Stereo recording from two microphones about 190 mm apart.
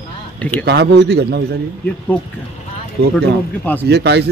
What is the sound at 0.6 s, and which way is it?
Speech, 60° right (ahead or behind).